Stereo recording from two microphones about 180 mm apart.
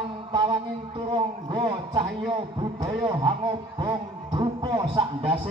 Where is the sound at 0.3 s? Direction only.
25° right (ahead or behind).